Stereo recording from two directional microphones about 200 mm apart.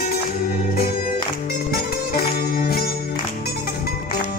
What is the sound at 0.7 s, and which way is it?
Music, 50° left (ahead or behind).